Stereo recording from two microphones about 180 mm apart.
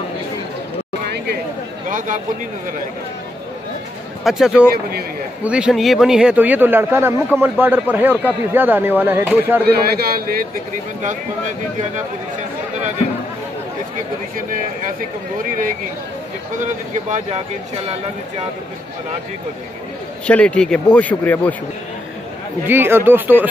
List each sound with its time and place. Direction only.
1.9 s a man's voice: 45° right (ahead or behind)
4.2 s a man's voice: centre (ahead or behind)
9.7 s a man's voice: 60° right (ahead or behind)
16.5 s speech: 45° right (ahead or behind)
20.2 s speech: 5° left (ahead or behind)
22.7 s a man's voice: 10° right (ahead or behind)